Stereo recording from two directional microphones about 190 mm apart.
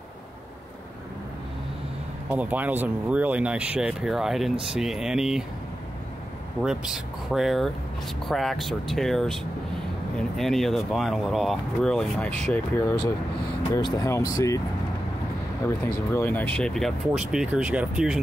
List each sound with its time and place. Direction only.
2.2 s speech: 10° right (ahead or behind)
6.6 s speech: 5° right (ahead or behind)
13.9 s speech: 20° left (ahead or behind)
15.6 s speech: 15° left (ahead or behind); by 18.2 s 5° right (ahead or behind)